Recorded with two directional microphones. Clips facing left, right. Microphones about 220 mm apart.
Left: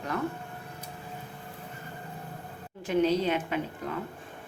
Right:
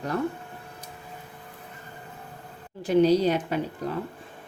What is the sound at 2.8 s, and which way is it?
Speech, 35° right (ahead or behind).